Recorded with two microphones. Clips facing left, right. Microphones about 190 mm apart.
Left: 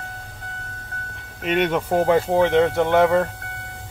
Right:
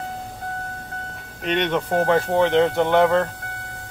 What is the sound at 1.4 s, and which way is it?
Speech, 5° left (ahead or behind).